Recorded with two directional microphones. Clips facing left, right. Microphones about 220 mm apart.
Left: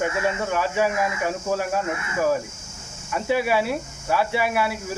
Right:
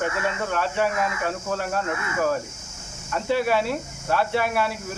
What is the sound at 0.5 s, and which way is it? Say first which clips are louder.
Speech: even; 10° left (ahead or behind).